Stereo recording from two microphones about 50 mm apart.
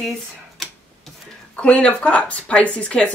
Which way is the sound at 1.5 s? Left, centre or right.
Centre.